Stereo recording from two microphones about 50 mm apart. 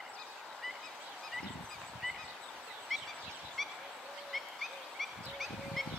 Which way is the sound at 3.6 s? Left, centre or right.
Centre.